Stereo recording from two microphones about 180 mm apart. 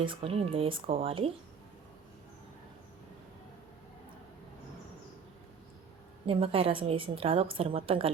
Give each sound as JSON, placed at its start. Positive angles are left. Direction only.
{"t": 0.0, "sound": "speech", "side_deg": -30}
{"t": 6.2, "sound": "speech", "side_deg": -30}